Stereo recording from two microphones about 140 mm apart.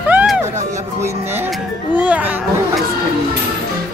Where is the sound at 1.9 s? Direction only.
10° right (ahead or behind).